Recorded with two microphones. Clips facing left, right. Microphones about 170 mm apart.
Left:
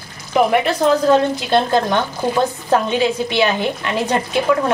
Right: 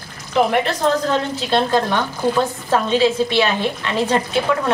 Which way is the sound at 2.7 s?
15° left (ahead or behind).